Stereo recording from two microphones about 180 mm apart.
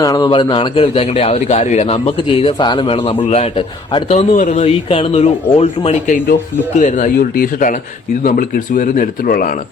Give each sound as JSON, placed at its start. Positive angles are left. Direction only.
{"t": 0.0, "sound": "a man's voice", "side_deg": 20}